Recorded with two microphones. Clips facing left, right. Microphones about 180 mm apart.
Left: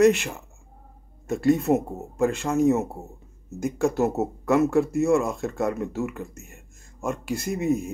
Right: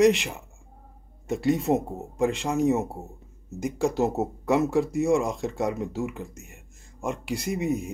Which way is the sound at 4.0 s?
15° right (ahead or behind).